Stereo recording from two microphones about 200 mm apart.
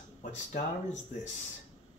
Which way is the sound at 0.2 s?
35° left (ahead or behind).